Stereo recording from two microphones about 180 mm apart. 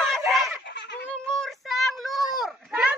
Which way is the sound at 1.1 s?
5° left (ahead or behind).